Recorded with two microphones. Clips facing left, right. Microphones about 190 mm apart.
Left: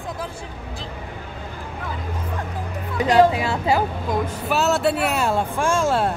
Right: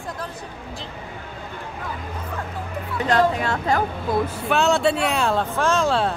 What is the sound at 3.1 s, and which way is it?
Speech, 10° left (ahead or behind).